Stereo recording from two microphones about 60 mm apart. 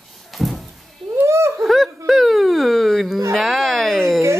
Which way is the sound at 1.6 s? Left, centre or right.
Centre.